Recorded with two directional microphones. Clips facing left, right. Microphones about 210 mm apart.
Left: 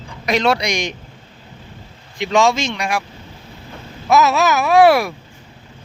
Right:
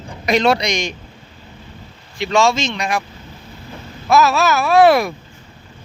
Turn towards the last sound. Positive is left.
turn(degrees=10)  # may be behind; listen again after turning